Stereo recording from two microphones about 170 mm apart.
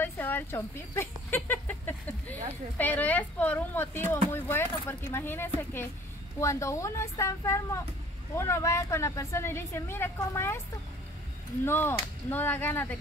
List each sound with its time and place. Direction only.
0.0 s a sound: 10° left (ahead or behind)
2.8 s a woman's voice: 10° left (ahead or behind)
11.6 s a woman's voice: 15° left (ahead or behind)